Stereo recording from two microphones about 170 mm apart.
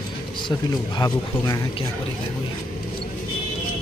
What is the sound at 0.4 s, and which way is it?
Speech, 25° left (ahead or behind).